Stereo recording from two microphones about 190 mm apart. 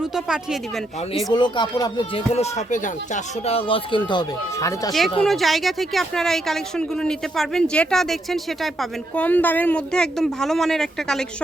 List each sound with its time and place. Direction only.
0.0 s speech: 5° right (ahead or behind)
1.3 s speech: 25° left (ahead or behind); by 2.9 s 40° left (ahead or behind)
3.4 s speech: 30° left (ahead or behind)
4.9 s speech: centre (ahead or behind)